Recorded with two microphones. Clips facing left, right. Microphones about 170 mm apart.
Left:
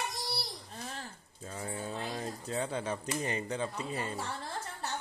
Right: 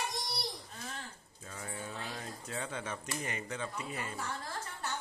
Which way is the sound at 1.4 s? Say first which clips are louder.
Left 5 dB; 30° left (ahead or behind).